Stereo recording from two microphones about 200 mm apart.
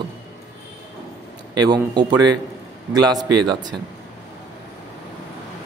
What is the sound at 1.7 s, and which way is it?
A man's voice, 20° right (ahead or behind).